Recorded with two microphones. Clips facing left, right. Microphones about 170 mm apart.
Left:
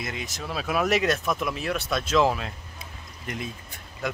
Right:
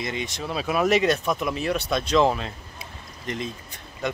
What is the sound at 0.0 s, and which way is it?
Speech, centre (ahead or behind).